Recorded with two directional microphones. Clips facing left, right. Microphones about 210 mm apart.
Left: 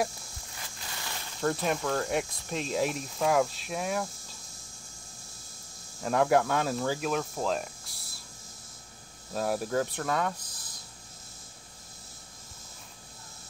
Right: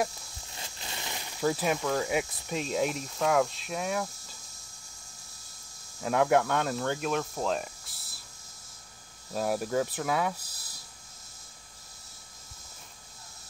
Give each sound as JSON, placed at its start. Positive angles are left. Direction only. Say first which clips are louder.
{"t": 0.6, "sound": "a sound", "louder": "right 2 dB", "side_deg": -20}
{"t": 1.4, "sound": "speech", "louder": "right 1 dB", "side_deg": -5}
{"t": 6.0, "sound": "speech", "louder": "even", "side_deg": 0}
{"t": 9.3, "sound": "speech", "louder": "even", "side_deg": 0}